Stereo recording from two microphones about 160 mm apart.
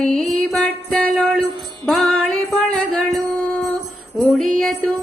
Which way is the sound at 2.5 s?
Centre (ahead or behind).